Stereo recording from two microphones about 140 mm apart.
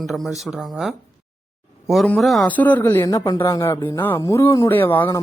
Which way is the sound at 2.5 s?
10° left (ahead or behind).